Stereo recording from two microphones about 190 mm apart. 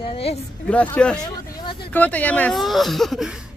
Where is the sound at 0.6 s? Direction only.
5° left (ahead or behind).